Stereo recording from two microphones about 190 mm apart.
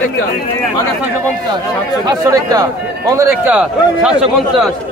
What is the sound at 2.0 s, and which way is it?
A man's voice, 20° right (ahead or behind).